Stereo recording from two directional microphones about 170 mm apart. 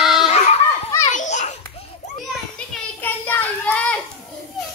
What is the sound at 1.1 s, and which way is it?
Children playing, 45° left (ahead or behind).